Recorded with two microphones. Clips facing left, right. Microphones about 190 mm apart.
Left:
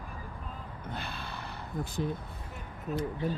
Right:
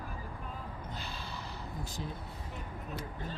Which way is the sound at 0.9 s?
60° left (ahead or behind).